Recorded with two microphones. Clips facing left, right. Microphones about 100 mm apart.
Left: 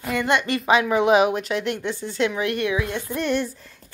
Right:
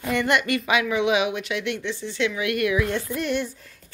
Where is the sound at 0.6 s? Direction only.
40° left (ahead or behind); by 3.1 s 20° left (ahead or behind).